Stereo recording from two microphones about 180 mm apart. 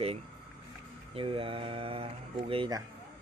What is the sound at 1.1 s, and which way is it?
Speech, 30° right (ahead or behind).